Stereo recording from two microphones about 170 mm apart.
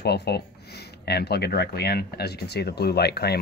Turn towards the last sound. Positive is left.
turn(degrees=70)  # may be behind; listen again after turning